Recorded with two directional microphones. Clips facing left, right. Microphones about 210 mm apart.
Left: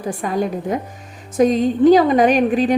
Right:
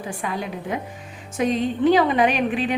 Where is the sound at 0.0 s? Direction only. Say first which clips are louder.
Left 7 dB; 40° left (ahead or behind).